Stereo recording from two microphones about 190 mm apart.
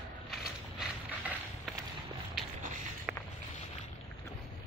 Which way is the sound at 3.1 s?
5° right (ahead or behind).